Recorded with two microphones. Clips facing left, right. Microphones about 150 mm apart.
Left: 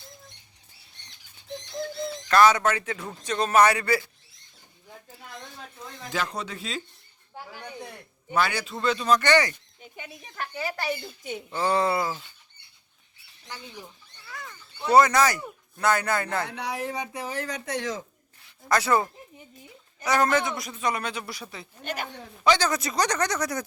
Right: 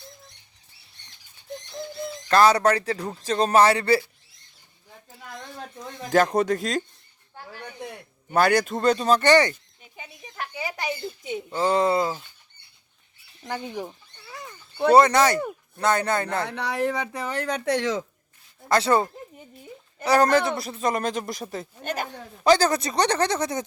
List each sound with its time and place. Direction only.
2.3 s speech: 35° right (ahead or behind)
6.1 s speech: 45° right (ahead or behind)
8.3 s speech: 45° right (ahead or behind)
10.3 s speech: 15° right (ahead or behind)
13.4 s speech: 55° right (ahead or behind)
14.3 s a sound: 20° right (ahead or behind)
14.9 s speech: 30° right (ahead or behind)
16.5 s speech: 60° right (ahead or behind)
18.7 s speech: 30° right (ahead or behind)
20.1 s speech: 35° right (ahead or behind)